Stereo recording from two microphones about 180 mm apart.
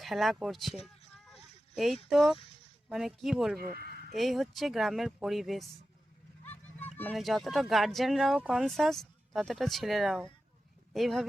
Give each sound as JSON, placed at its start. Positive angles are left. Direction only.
{"t": 0.0, "sound": "speech", "side_deg": 0}
{"t": 1.3, "sound": "a sound", "side_deg": 0}
{"t": 2.0, "sound": "speech", "side_deg": 0}
{"t": 3.6, "sound": "speech", "side_deg": -55}
{"t": 4.1, "sound": "speech", "side_deg": 0}
{"t": 6.4, "sound": "a sound", "side_deg": 10}
{"t": 7.0, "sound": "speech", "side_deg": 0}